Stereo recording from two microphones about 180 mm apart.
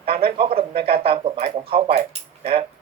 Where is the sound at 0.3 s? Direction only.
30° right (ahead or behind).